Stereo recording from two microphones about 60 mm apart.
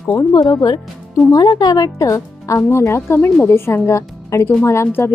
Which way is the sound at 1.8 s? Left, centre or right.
Left.